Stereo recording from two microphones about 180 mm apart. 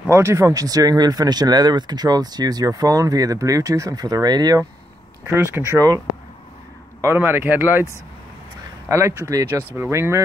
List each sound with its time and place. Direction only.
0.1 s speech: 15° right (ahead or behind)
8.8 s speech: 15° right (ahead or behind)